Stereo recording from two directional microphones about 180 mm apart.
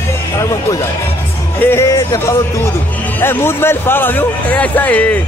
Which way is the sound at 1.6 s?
15° left (ahead or behind).